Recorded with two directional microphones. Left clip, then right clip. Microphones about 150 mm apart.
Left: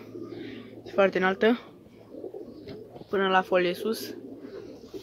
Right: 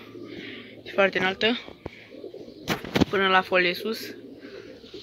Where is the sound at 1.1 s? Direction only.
20° left (ahead or behind).